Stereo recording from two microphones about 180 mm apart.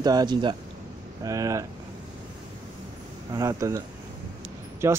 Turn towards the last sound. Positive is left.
turn(degrees=-15)  # may be behind; listen again after turning